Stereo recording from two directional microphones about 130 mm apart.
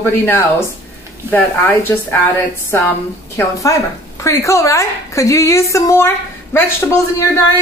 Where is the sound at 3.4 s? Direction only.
25° left (ahead or behind).